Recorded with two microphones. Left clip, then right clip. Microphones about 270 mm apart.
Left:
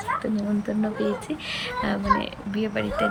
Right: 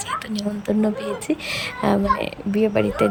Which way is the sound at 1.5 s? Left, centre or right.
Right.